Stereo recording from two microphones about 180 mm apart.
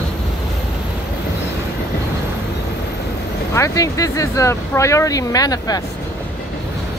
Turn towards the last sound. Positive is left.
turn(degrees=20)  # may be behind; listen again after turning